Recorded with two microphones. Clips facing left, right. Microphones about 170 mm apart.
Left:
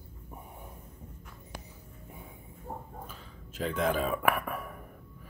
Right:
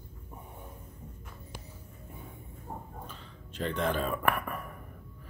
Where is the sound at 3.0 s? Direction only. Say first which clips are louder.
Even; 5° left (ahead or behind).